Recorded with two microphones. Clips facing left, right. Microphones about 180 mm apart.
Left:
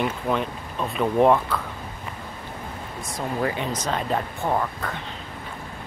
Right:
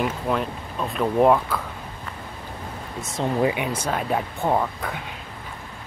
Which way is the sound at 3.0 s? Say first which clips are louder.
Right 4 dB; 25° right (ahead or behind).